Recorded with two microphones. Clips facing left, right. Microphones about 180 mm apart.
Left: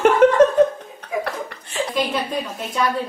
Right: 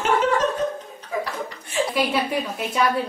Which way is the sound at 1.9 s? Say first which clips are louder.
Left 1 dB; 10° right (ahead or behind).